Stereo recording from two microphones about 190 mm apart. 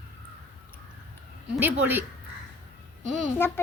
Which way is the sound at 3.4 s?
10° left (ahead or behind).